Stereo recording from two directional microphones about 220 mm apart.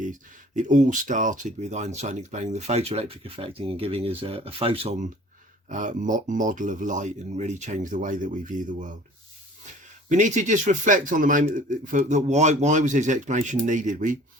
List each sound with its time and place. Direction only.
0.0 s speech: 35° right (ahead or behind)
10.1 s speech: 35° right (ahead or behind)